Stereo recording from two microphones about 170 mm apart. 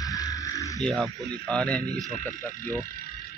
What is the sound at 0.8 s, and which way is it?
Speech, 5° left (ahead or behind).